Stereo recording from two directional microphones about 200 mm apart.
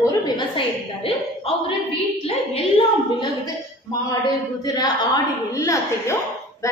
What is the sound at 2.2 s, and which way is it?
A woman's voice, 25° left (ahead or behind).